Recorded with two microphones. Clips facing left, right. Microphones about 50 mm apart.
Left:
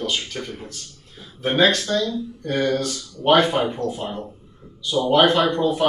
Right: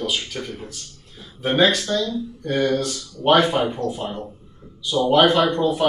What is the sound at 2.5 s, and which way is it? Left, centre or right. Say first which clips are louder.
Speech: right 1 dB; centre.